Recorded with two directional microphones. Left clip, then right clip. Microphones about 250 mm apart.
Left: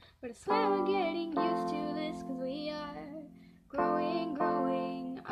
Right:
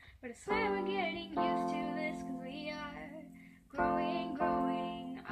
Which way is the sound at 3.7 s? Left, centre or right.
Left.